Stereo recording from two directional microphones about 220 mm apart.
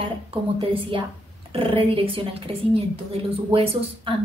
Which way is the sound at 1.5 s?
25° right (ahead or behind).